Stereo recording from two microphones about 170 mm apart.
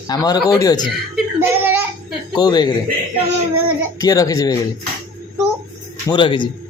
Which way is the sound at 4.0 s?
20° left (ahead or behind).